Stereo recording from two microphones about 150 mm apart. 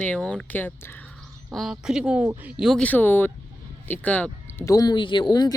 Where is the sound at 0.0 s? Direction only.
5° left (ahead or behind).